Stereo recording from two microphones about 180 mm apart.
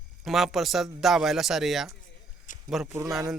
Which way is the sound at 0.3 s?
Centre (ahead or behind).